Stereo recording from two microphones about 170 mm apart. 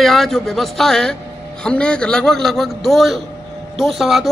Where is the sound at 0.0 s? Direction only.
Centre (ahead or behind).